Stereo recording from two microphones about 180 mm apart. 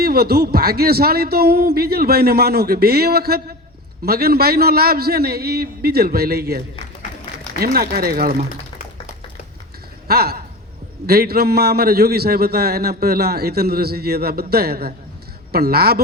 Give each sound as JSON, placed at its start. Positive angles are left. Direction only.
{"t": 0.0, "sound": "a man's voice", "side_deg": -60}
{"t": 7.6, "sound": "a man's voice", "side_deg": -55}
{"t": 10.1, "sound": "a sound", "side_deg": -60}
{"t": 11.0, "sound": "a man's voice", "side_deg": -60}